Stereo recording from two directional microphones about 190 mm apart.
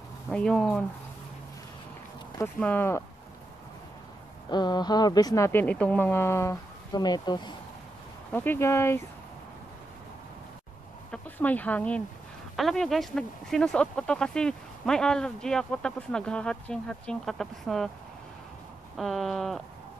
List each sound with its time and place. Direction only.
0.3 s speech: 5° left (ahead or behind)
2.3 s speech: 10° left (ahead or behind)
4.5 s speech: 20° left (ahead or behind)
8.3 s speech: 10° left (ahead or behind)
11.1 s speech: 10° left (ahead or behind)
18.9 s speech: centre (ahead or behind)